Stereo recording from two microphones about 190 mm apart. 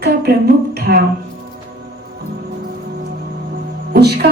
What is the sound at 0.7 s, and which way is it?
Music, 55° right (ahead or behind).